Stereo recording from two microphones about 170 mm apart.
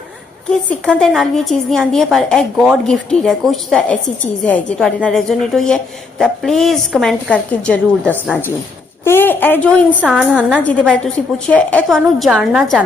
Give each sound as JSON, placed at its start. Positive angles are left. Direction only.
{"t": 0.7, "sound": "a woman's voice", "side_deg": 5}
{"t": 10.0, "sound": "a woman's voice", "side_deg": -5}
{"t": 10.6, "sound": "a woman's voice", "side_deg": 10}